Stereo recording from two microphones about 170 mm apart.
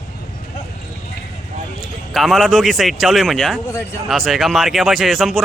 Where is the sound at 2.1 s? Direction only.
Centre (ahead or behind).